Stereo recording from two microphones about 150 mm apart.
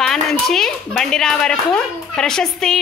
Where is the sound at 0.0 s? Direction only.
5° left (ahead or behind).